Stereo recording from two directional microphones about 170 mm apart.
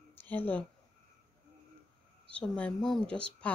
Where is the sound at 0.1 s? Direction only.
10° left (ahead or behind).